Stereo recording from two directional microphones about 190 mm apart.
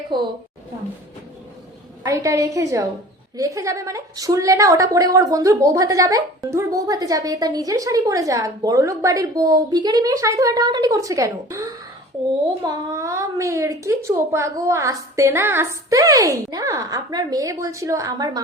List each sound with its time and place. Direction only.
0.1 s a woman's voice: 25° right (ahead or behind)
2.0 s a woman's voice: 15° right (ahead or behind)